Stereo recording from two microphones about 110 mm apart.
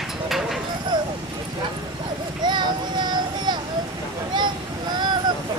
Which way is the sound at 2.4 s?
45° right (ahead or behind).